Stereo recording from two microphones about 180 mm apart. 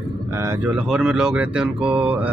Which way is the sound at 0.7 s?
5° right (ahead or behind).